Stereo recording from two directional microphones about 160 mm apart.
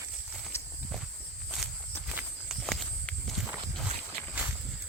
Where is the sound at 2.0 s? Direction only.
5° right (ahead or behind).